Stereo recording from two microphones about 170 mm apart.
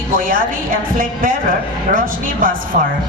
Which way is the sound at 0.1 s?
55° right (ahead or behind).